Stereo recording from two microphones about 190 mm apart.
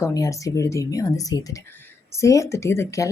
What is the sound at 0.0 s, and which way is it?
Speech, 15° left (ahead or behind).